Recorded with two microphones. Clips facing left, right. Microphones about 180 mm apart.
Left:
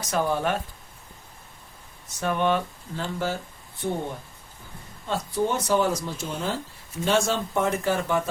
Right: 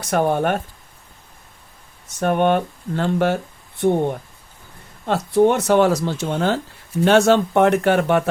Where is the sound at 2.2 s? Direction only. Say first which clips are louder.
Right 6 dB; 55° right (ahead or behind).